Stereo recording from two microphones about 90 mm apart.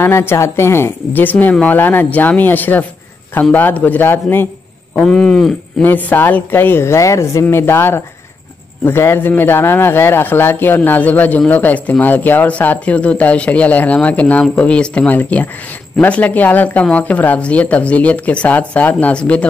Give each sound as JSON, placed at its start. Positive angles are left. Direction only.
{"t": 0.0, "sound": "speech", "side_deg": 25}
{"t": 5.0, "sound": "speech", "side_deg": 10}
{"t": 5.9, "sound": "speech", "side_deg": 20}